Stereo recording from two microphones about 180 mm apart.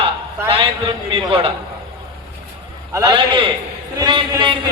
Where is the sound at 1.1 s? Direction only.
30° right (ahead or behind).